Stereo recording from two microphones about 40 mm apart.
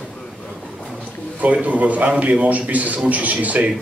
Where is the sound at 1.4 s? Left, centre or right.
Right.